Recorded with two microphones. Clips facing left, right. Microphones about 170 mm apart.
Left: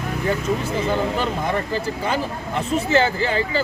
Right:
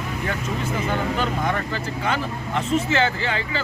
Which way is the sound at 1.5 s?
35° left (ahead or behind).